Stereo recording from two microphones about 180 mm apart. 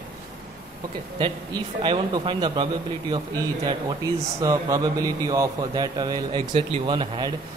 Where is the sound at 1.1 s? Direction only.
25° right (ahead or behind).